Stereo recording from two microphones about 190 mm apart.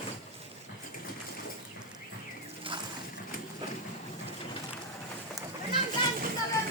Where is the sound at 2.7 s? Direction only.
25° right (ahead or behind).